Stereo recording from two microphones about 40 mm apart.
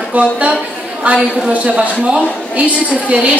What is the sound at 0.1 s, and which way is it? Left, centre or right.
A woman's voice, right.